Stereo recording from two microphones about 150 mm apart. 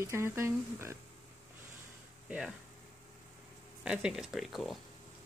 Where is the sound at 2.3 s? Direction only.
5° right (ahead or behind).